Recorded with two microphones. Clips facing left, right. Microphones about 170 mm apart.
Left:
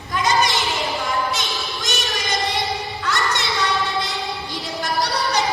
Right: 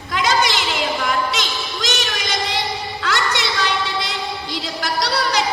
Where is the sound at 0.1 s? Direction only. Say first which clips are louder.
Right 1 dB; 75° right (ahead or behind).